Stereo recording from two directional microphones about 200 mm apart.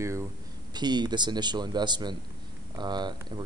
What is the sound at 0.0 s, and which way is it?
Speech, 15° right (ahead or behind).